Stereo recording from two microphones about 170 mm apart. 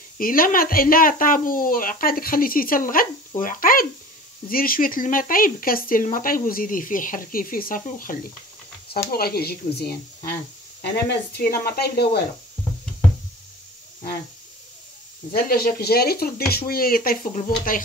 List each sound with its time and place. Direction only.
0.2 s speech: 55° left (ahead or behind)
8.8 s speech: 65° left (ahead or behind)
11.6 s speech: 65° left (ahead or behind)
15.3 s speech: 60° left (ahead or behind)